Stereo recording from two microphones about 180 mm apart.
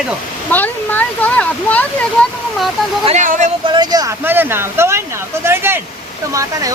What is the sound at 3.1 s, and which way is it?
Speech, 40° right (ahead or behind).